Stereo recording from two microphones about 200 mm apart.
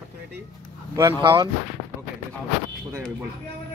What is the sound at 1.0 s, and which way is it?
Speech, 20° right (ahead or behind).